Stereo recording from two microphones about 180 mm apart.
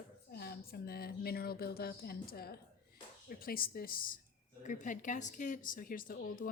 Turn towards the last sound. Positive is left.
turn(degrees=50)  # may be behind; listen again after turning